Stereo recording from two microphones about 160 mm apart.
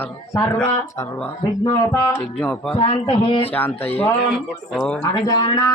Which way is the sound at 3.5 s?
10° left (ahead or behind).